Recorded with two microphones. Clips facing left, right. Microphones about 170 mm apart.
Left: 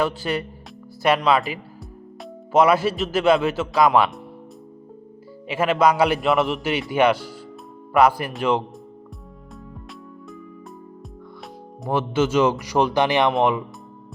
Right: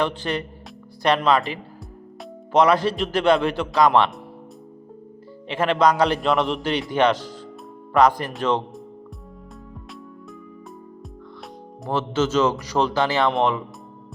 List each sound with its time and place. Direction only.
0.0 s a man's voice: 10° left (ahead or behind)
2.5 s a man's voice: 5° left (ahead or behind)
5.5 s a man's voice: 10° left (ahead or behind)
11.9 s a man's voice: 10° left (ahead or behind)